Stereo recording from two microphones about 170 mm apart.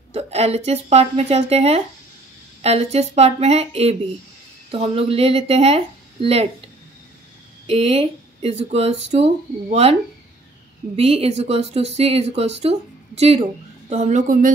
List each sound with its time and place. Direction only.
0.1 s speech: 40° right (ahead or behind)
7.6 s speech: 35° right (ahead or behind)
11.0 s speech: 35° right (ahead or behind)